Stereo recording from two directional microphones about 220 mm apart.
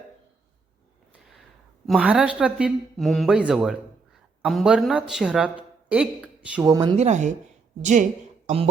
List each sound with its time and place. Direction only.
1.9 s speech: 5° right (ahead or behind)
6.9 s speech: 30° right (ahead or behind)